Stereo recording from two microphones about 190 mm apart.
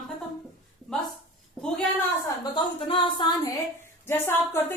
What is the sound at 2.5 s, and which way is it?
Music, 25° left (ahead or behind).